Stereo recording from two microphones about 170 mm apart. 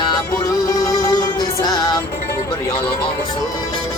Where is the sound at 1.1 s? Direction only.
25° left (ahead or behind).